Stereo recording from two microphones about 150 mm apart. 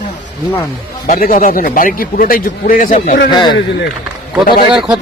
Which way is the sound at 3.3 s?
30° left (ahead or behind).